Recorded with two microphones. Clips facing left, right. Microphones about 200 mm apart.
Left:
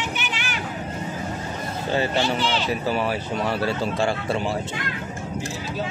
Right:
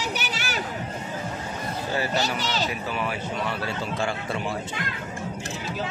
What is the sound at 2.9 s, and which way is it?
Speech, 35° left (ahead or behind).